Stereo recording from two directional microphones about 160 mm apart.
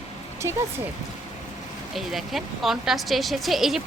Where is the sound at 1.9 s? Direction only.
Centre (ahead or behind).